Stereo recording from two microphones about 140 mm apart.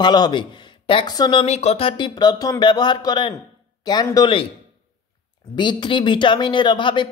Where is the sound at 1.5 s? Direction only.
50° left (ahead or behind); by 4.3 s 30° left (ahead or behind).